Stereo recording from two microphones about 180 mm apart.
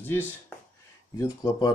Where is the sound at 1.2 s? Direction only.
20° left (ahead or behind).